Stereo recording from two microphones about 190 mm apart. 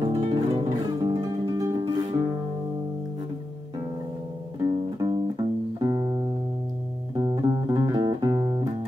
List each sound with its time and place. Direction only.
0.0 s music: 20° right (ahead or behind)
4.6 s music: 20° right (ahead or behind)
7.2 s music: 20° right (ahead or behind)